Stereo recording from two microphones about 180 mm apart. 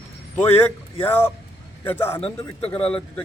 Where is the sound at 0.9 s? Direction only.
10° left (ahead or behind).